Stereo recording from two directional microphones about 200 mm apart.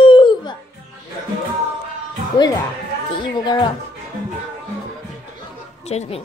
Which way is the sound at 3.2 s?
20° left (ahead or behind).